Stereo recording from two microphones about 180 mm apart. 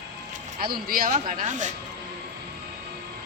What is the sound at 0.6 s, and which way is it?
Speech, 55° right (ahead or behind).